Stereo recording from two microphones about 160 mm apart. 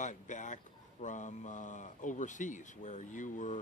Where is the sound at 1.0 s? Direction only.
50° left (ahead or behind).